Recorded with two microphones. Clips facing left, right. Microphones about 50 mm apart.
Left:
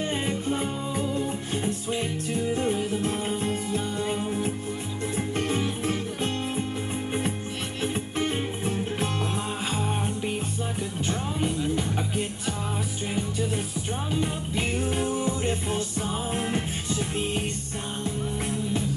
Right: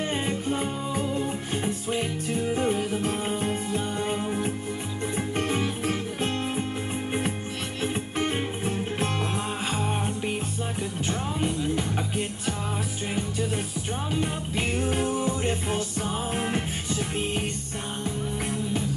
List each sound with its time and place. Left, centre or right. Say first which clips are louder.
0.0 s music: even; centre
8.2 s music: right 1 dB; right
9.8 s music: even; centre
14.9 s music: right 1 dB; centre